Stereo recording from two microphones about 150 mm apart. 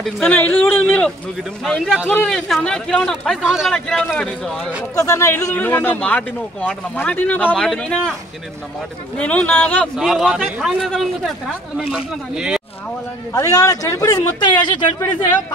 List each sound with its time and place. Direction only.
0.0 s a man's voice: 10° left (ahead or behind)
4.9 s speech: 20° left (ahead or behind); by 8.2 s 5° left (ahead or behind)
9.2 s speech: 10° left (ahead or behind)
9.9 s a man's voice: 5° right (ahead or behind)
13.3 s speech: 25° left (ahead or behind)